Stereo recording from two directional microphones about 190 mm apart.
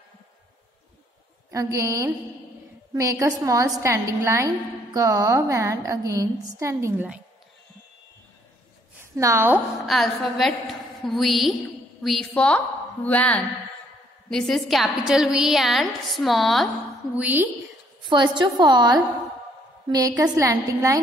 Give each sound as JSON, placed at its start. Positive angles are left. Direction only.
{"t": 1.5, "sound": "a woman's voice", "side_deg": -15}
{"t": 9.1, "sound": "a woman's voice", "side_deg": -15}
{"t": 9.8, "sound": "a woman's voice", "side_deg": 0}
{"t": 18.1, "sound": "a woman's voice", "side_deg": -25}